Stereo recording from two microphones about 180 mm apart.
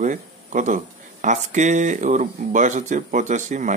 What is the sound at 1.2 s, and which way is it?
A man's voice, 40° right (ahead or behind).